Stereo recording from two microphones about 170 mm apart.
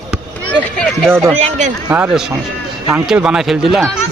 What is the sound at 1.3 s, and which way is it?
Speech, 40° right (ahead or behind).